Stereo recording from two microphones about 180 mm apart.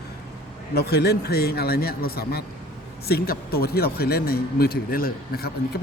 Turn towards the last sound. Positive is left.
turn(degrees=55)  # may be behind; listen again after turning